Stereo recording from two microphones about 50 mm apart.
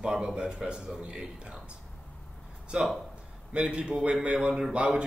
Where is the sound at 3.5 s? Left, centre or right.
Right.